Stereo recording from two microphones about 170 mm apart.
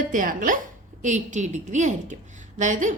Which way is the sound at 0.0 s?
50° right (ahead or behind).